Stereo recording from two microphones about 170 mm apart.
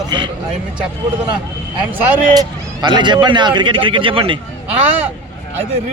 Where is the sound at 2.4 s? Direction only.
25° right (ahead or behind).